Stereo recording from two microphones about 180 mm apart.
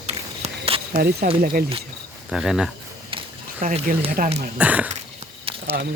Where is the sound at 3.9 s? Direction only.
45° right (ahead or behind).